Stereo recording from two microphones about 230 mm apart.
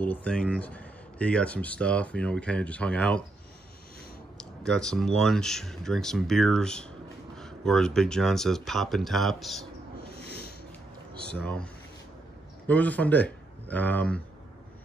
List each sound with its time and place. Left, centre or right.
0.0 s speech: centre
4.4 s speech: centre
10.1 s a sound: left
11.3 s speech: centre